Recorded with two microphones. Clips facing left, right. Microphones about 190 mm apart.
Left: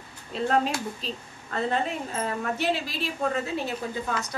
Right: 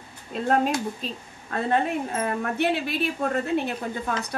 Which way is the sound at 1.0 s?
50° right (ahead or behind).